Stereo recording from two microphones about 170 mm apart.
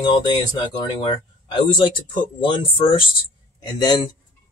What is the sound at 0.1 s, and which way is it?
Speech, 25° left (ahead or behind).